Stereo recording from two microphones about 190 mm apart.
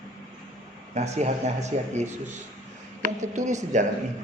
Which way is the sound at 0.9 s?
35° right (ahead or behind).